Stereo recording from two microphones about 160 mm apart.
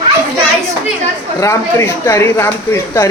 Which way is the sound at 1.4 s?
20° left (ahead or behind).